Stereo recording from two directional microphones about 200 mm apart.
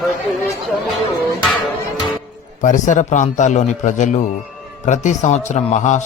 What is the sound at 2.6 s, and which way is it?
A man's voice, 40° left (ahead or behind).